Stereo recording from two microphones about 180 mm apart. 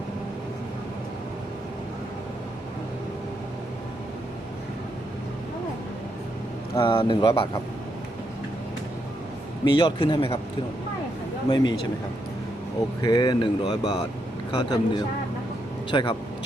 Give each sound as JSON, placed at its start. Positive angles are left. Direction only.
{"t": 6.7, "sound": "speech", "side_deg": 30}
{"t": 9.6, "sound": "speech", "side_deg": 25}
{"t": 11.4, "sound": "speech", "side_deg": 25}
{"t": 13.0, "sound": "speech", "side_deg": 25}